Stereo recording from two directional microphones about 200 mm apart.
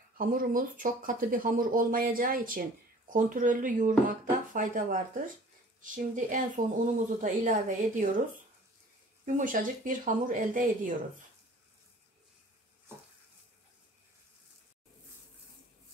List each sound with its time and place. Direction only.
0.2 s speech: 45° right (ahead or behind)
9.2 s speech: 40° right (ahead or behind)